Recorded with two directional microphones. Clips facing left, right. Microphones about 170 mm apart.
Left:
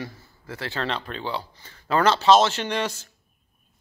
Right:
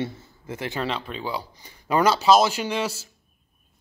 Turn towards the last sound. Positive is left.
turn(degrees=-5)  # may be behind; listen again after turning